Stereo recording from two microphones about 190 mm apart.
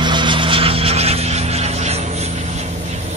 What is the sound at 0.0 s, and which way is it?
Vehicle, 25° right (ahead or behind).